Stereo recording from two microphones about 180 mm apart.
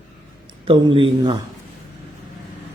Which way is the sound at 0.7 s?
30° right (ahead or behind).